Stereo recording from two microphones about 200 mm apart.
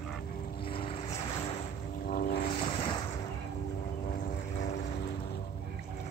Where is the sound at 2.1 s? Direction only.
50° left (ahead or behind).